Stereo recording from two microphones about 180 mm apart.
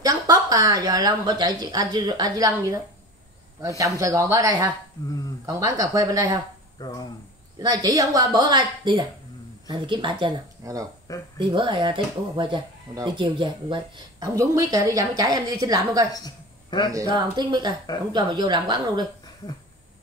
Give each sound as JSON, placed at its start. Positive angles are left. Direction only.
{"t": 0.0, "sound": "speech", "side_deg": -20}
{"t": 5.0, "sound": "speech", "side_deg": 20}
{"t": 5.5, "sound": "speech", "side_deg": -20}
{"t": 6.8, "sound": "speech", "side_deg": 20}
{"t": 7.5, "sound": "speech", "side_deg": -20}
{"t": 16.1, "sound": "a sound", "side_deg": 20}
{"t": 16.9, "sound": "speech", "side_deg": -20}